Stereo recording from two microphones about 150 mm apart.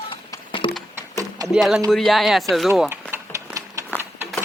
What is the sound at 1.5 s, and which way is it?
Speech, centre (ahead or behind).